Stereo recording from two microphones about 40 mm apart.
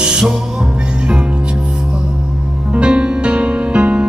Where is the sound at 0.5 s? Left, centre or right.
Right.